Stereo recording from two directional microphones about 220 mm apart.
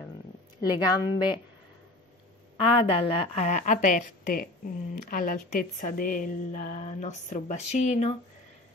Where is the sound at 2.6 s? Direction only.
25° left (ahead or behind).